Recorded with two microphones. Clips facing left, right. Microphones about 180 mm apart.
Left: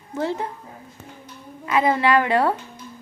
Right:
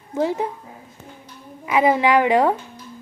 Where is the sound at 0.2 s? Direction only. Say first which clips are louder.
Right 4 dB; 15° right (ahead or behind).